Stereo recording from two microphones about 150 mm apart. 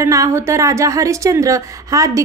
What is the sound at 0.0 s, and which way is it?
A woman's voice, 20° right (ahead or behind).